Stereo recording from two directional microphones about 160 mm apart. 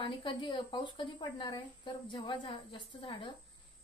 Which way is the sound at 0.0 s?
30° left (ahead or behind).